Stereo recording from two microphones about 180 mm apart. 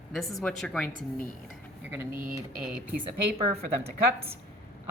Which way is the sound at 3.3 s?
35° right (ahead or behind).